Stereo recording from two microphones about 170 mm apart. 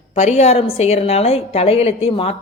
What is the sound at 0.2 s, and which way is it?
A woman's voice, 40° left (ahead or behind).